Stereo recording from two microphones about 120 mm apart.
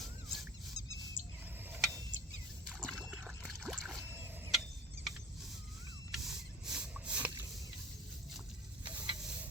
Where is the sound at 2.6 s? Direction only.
Centre (ahead or behind).